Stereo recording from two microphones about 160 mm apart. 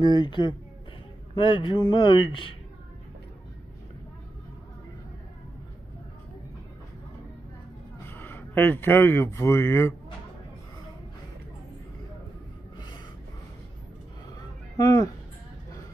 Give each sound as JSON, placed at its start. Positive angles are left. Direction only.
{"t": 0.0, "sound": "a man's voice", "side_deg": 30}
{"t": 8.1, "sound": "speech", "side_deg": 15}
{"t": 14.8, "sound": "a man's voice", "side_deg": 20}